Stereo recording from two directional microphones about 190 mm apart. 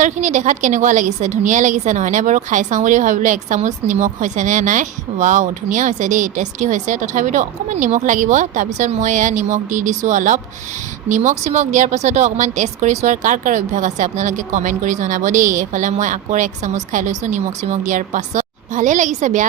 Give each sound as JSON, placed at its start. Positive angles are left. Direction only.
{"t": 0.0, "sound": "a woman's voice", "side_deg": -40}